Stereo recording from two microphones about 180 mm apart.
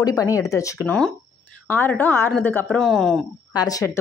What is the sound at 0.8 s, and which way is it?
A woman's voice, 5° left (ahead or behind).